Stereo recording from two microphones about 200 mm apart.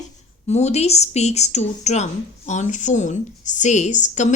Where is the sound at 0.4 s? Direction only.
35° left (ahead or behind).